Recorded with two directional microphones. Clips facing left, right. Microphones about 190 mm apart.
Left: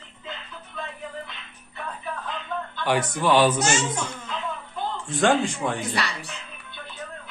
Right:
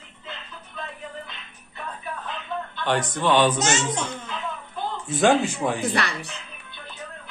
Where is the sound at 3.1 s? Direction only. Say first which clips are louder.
Even; 10° left (ahead or behind).